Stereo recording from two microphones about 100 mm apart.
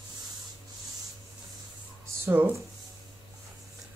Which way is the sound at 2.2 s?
20° right (ahead or behind).